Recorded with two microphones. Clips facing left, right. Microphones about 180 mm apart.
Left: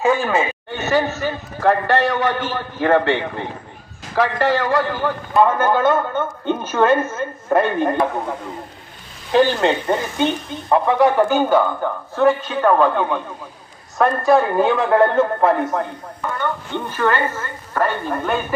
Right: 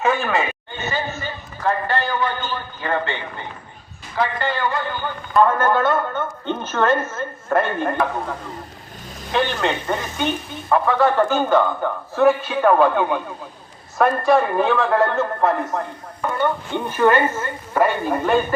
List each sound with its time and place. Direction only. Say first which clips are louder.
0.1 s a sound: left 3 dB; 15° left (ahead or behind)
0.7 s a man's voice: left 7 dB; 80° left
5.3 s a woman's voice: even; 20° left (ahead or behind)
9.3 s speech: left 6 dB; 35° left (ahead or behind)
10.7 s a woman's voice: left 2 dB; 20° left (ahead or behind)
12.1 s a woman's voice: even; 5° right (ahead or behind)
14.6 s speech: left 3 dB; 15° left (ahead or behind)
16.4 s a woman's voice: right 4 dB; 15° right (ahead or behind)